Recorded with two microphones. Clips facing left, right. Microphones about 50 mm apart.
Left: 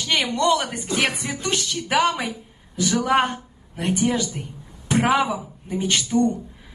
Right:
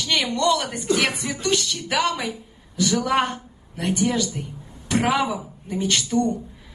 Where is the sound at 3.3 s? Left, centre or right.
Centre.